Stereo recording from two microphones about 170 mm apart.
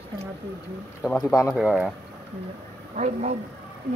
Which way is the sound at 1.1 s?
Centre (ahead or behind).